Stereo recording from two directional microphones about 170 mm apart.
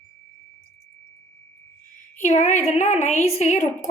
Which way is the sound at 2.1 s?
45° left (ahead or behind).